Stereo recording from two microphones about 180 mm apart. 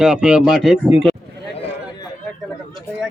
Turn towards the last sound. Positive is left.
turn(degrees=0)  # may be behind; listen again after turning